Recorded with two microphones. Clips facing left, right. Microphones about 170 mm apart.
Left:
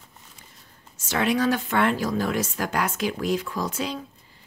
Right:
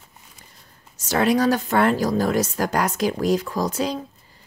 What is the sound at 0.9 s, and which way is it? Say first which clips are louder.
Speech: right 4 dB; 40° right (ahead or behind).